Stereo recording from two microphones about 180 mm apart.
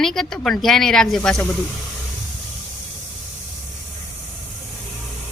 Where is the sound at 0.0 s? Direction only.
5° left (ahead or behind).